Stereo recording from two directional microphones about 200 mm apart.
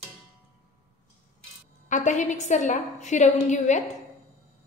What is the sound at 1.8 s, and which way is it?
A woman's voice, 40° left (ahead or behind).